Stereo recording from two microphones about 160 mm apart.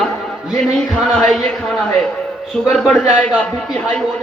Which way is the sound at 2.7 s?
Centre (ahead or behind).